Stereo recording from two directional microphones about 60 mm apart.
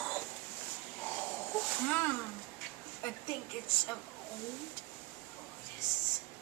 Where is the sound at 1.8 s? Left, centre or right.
Left.